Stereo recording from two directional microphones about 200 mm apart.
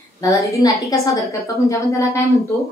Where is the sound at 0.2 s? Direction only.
15° left (ahead or behind).